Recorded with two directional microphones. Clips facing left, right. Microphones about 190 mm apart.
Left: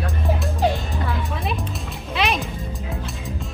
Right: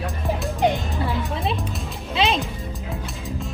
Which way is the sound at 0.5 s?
20° right (ahead or behind).